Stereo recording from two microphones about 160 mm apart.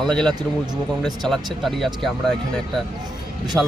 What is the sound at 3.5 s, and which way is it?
Speech, 5° left (ahead or behind).